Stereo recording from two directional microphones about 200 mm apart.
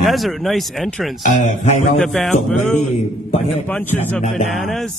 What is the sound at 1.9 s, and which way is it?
Speech, centre (ahead or behind).